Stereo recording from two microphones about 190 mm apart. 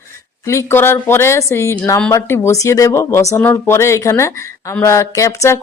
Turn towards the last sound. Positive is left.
turn(degrees=15)  # may be behind; listen again after turning